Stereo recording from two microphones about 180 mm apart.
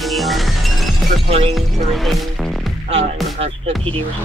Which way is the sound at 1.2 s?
35° right (ahead or behind).